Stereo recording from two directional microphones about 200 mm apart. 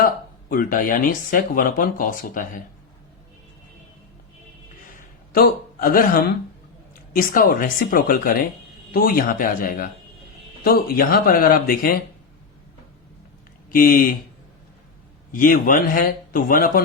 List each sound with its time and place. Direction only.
0.5 s speech: 45° left (ahead or behind)
5.3 s speech: 45° left (ahead or behind)
13.7 s speech: 45° left (ahead or behind)
15.3 s speech: 45° left (ahead or behind)